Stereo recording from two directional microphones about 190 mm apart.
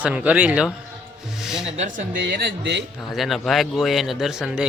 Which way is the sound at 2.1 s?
60° right (ahead or behind).